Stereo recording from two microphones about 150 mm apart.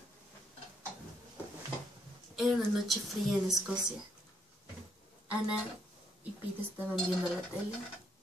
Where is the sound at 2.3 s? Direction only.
Centre (ahead or behind).